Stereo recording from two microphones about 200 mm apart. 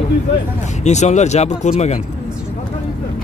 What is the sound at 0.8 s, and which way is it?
Speech, 35° left (ahead or behind).